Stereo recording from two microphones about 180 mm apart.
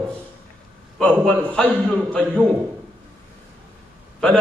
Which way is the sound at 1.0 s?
5° left (ahead or behind).